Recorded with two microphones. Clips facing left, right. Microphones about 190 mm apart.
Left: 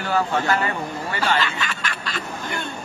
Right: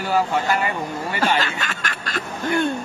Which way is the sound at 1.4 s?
45° right (ahead or behind).